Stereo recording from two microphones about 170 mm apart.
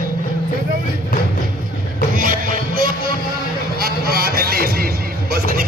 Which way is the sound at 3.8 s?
65° right (ahead or behind).